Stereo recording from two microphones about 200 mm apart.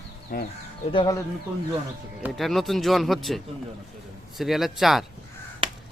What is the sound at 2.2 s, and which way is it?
Speech, centre (ahead or behind).